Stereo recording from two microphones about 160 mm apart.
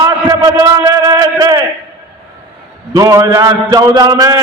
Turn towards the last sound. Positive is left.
turn(degrees=-20)  # may be behind; listen again after turning